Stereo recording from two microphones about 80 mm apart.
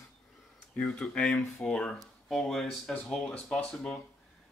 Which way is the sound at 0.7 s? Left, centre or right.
Centre.